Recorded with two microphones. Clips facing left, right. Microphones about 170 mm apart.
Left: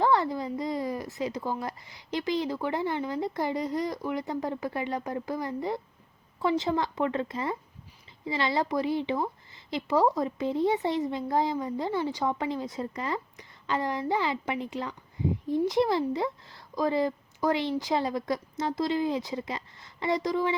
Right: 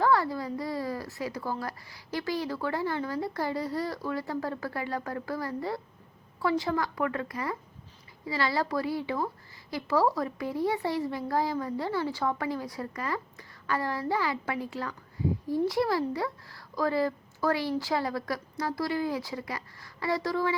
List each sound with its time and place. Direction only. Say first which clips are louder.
0.0 s a woman's voice: left 1 dB; 20° left (ahead or behind)